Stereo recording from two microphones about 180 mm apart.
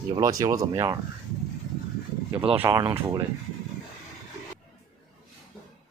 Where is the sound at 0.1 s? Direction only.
20° right (ahead or behind).